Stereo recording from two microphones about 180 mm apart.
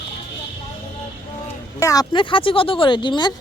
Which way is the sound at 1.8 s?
20° left (ahead or behind).